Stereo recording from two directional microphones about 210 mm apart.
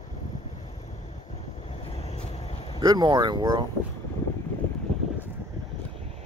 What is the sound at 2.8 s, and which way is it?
Speech, 20° right (ahead or behind).